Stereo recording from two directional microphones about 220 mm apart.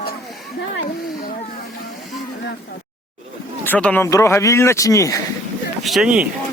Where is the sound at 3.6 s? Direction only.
5° left (ahead or behind).